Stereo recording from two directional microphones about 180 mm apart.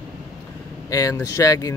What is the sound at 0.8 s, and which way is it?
Speech, 20° left (ahead or behind).